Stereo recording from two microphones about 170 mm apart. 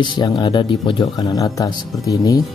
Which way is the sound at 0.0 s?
25° left (ahead or behind).